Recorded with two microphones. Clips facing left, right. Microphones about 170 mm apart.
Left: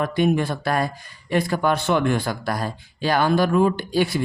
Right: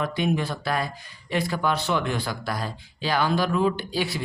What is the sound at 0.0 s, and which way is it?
Speech, 50° left (ahead or behind).